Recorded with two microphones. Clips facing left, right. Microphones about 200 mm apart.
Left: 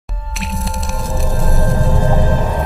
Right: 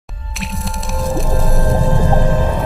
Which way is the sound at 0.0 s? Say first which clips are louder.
Left 1 dB; centre (ahead or behind).